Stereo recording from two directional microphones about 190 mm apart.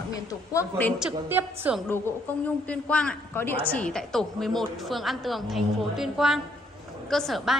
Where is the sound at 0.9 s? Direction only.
5° right (ahead or behind).